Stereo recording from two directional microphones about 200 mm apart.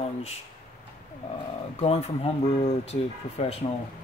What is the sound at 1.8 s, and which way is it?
Speech, 30° left (ahead or behind).